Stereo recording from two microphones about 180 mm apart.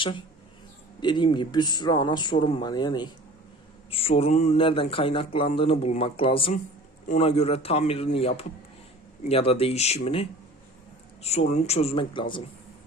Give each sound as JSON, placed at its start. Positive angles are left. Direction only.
{"t": 1.0, "sound": "speech", "side_deg": 25}